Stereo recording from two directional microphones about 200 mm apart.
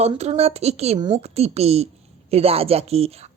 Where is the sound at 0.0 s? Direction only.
30° right (ahead or behind).